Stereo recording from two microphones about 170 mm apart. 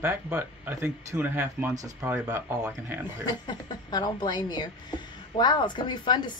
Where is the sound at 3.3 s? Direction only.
25° left (ahead or behind).